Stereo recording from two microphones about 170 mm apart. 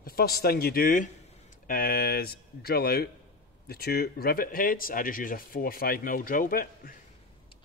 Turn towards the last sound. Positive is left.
turn(degrees=60)  # may be behind; listen again after turning